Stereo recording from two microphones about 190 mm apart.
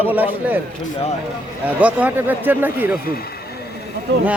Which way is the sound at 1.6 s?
10° right (ahead or behind).